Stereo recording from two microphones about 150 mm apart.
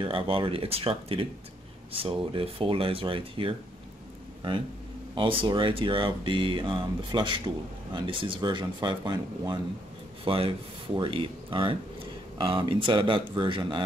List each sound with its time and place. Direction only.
0.0 s speech: 35° right (ahead or behind)
5.1 s speech: 35° right (ahead or behind)